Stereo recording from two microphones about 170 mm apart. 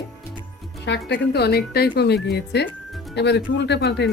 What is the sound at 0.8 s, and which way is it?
A woman's voice, 85° left.